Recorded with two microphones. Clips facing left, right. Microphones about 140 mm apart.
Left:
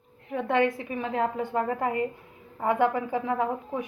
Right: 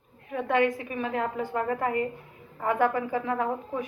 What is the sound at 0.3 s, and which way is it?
A woman's voice, 25° left (ahead or behind).